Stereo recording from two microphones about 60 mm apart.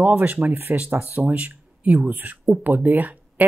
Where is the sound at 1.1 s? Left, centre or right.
Right.